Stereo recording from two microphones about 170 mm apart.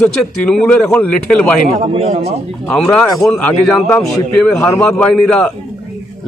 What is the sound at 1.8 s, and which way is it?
Speech, 35° right (ahead or behind).